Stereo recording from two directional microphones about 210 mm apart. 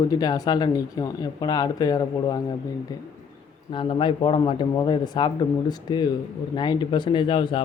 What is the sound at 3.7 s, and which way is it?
A man's voice, 25° left (ahead or behind).